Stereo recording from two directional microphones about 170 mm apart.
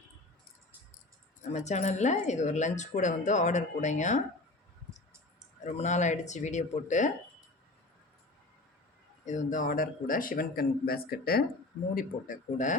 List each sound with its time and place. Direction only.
1.5 s speech: 45° left (ahead or behind)
5.6 s speech: 45° left (ahead or behind)
9.2 s a man's voice: 45° left (ahead or behind)
11.9 s speech: 50° left (ahead or behind)